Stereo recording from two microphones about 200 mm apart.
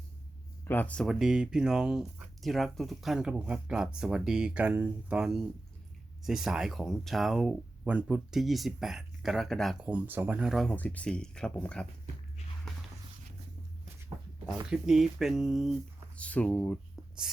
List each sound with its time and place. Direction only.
0.6 s speech: 10° left (ahead or behind)
14.7 s speech: centre (ahead or behind)